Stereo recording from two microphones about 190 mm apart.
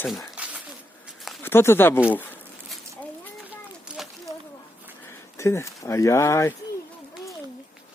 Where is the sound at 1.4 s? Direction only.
10° left (ahead or behind).